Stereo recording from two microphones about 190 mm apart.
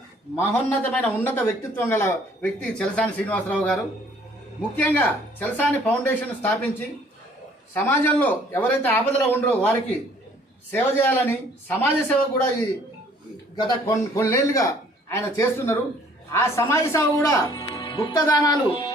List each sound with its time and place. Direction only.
0.9 s speech: 10° left (ahead or behind)
4.8 s speech: 10° left (ahead or behind)
13.6 s speech: 20° left (ahead or behind)